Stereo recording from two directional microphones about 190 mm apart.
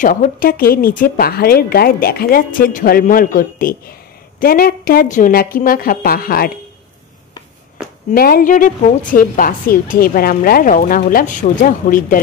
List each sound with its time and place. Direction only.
0.0 s a woman's voice: 45° left (ahead or behind)
8.1 s a woman's voice: 50° left (ahead or behind)